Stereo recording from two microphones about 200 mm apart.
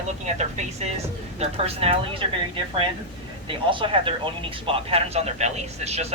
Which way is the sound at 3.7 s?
25° right (ahead or behind).